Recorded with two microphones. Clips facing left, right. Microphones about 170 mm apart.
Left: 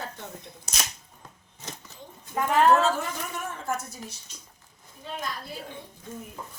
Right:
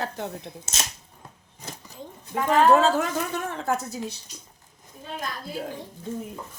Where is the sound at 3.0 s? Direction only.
90° right.